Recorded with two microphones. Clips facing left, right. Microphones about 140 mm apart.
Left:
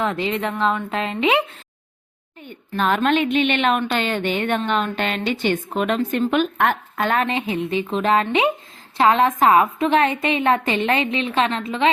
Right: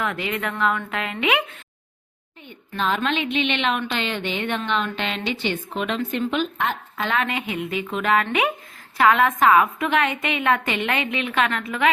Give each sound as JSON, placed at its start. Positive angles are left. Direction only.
{"t": 0.0, "sound": "speech", "side_deg": 30}
{"t": 2.5, "sound": "a woman's voice", "side_deg": 50}
{"t": 7.3, "sound": "a woman's voice", "side_deg": 30}